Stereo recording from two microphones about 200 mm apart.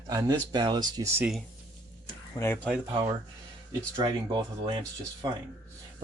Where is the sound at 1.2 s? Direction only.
Centre (ahead or behind).